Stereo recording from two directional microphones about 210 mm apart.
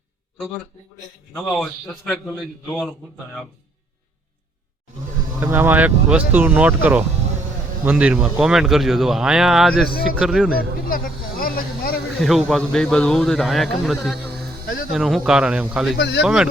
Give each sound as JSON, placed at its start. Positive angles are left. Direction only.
{"t": 1.4, "sound": "a man's voice", "side_deg": 0}
{"t": 5.4, "sound": "a man's voice", "side_deg": -10}
{"t": 9.8, "sound": "speech", "side_deg": 45}
{"t": 10.2, "sound": "a man's voice", "side_deg": 0}
{"t": 10.6, "sound": "speech", "side_deg": 45}
{"t": 12.2, "sound": "a man's voice", "side_deg": 0}
{"t": 16.0, "sound": "speech", "side_deg": 55}
{"t": 16.2, "sound": "a man's voice", "side_deg": -5}